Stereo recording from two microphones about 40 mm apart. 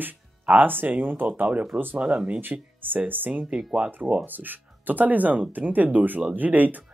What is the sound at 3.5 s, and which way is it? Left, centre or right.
Speech, centre.